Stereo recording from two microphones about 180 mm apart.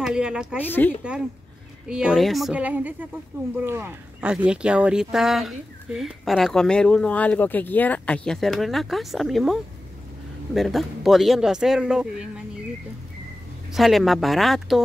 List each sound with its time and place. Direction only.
0.0 s speech: 5° right (ahead or behind)
0.7 s speech: 10° left (ahead or behind)
1.9 s speech: 5° right (ahead or behind)
13.7 s speech: centre (ahead or behind)